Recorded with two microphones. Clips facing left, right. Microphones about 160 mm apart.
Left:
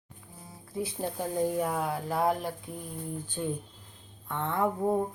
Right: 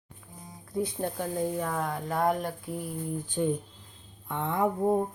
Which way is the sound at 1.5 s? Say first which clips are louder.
Left 1 dB; 10° left (ahead or behind).